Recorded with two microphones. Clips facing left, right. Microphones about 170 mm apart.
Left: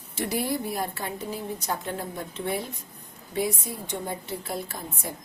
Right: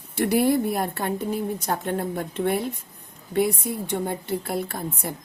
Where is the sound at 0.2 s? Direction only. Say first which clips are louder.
Right 8 dB; 60° right (ahead or behind).